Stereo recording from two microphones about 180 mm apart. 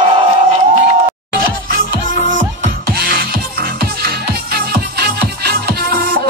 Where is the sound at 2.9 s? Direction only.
55° right (ahead or behind).